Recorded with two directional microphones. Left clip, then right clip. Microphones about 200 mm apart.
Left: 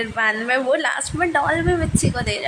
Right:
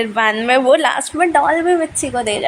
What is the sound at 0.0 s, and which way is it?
A woman's voice, 25° right (ahead or behind).